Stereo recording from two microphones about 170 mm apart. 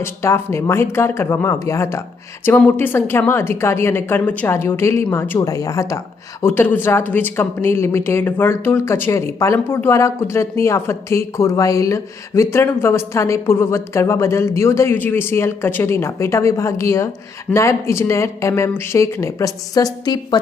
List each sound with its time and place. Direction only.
0.0 s speech: 15° left (ahead or behind)